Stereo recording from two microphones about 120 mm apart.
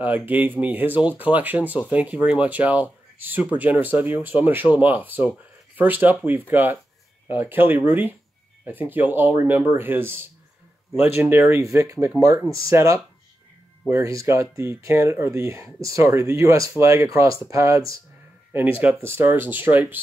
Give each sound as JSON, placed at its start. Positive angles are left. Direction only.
{"t": 0.0, "sound": "speech", "side_deg": -15}